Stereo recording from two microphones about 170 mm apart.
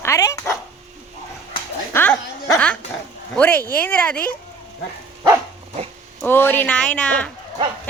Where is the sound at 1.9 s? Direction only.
10° left (ahead or behind).